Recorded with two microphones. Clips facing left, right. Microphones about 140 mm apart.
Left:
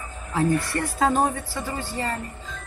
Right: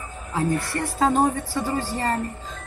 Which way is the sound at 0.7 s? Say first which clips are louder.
Even; 25° right (ahead or behind).